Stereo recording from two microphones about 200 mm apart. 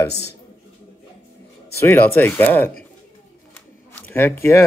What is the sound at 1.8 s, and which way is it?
Speech, 10° left (ahead or behind).